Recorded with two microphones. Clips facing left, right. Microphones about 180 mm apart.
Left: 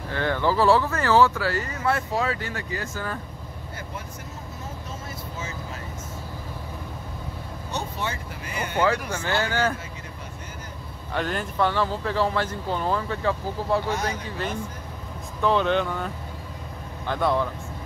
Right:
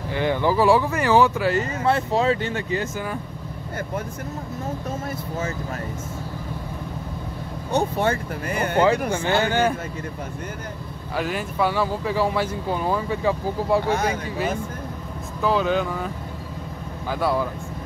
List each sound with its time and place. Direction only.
0.1 s speech: 15° right (ahead or behind)
7.7 s speech: 55° right (ahead or behind)
9.2 s speech: 20° right (ahead or behind)
11.1 s speech: 5° right (ahead or behind)
15.4 s speech: 5° right (ahead or behind)
17.1 s speech: 5° right (ahead or behind)